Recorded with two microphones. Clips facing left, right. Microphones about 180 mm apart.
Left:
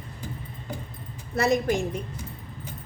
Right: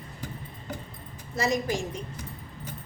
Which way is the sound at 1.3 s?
60° left (ahead or behind).